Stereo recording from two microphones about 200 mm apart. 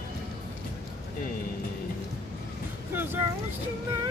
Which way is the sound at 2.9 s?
10° right (ahead or behind).